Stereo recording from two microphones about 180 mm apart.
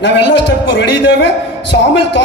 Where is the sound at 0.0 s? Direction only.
80° left.